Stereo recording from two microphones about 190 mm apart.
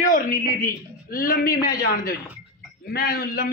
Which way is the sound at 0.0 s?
45° left (ahead or behind).